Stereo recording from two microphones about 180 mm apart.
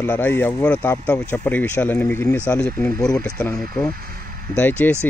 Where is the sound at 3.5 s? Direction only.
20° left (ahead or behind).